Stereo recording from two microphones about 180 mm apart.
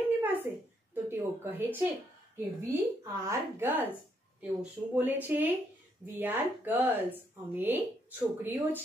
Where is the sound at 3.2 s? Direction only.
10° right (ahead or behind).